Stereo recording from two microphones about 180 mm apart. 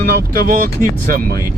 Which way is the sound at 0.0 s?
60° right (ahead or behind).